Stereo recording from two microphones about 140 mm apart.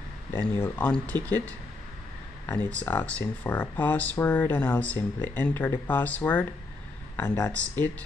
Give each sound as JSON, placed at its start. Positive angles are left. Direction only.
{"t": 0.3, "sound": "speech", "side_deg": 10}